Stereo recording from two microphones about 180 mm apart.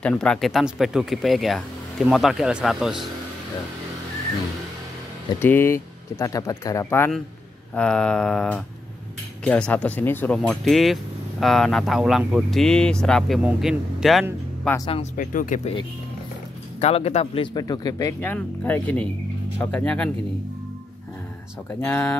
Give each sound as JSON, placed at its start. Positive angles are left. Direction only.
{"t": 0.0, "sound": "speech", "side_deg": 5}
{"t": 5.4, "sound": "speech", "side_deg": 10}
{"t": 15.1, "sound": "speech", "side_deg": 50}
{"t": 16.8, "sound": "speech", "side_deg": 35}
{"t": 21.7, "sound": "speech", "side_deg": 10}